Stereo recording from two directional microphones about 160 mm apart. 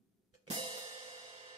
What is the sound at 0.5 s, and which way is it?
Music, 35° right (ahead or behind).